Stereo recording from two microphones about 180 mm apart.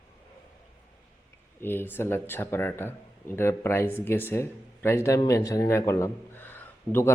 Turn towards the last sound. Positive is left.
turn(degrees=10)  # may be behind; listen again after turning